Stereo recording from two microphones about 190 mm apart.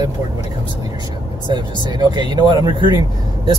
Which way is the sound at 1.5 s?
20° right (ahead or behind).